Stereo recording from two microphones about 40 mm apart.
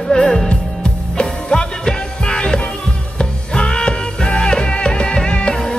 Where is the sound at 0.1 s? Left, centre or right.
Centre.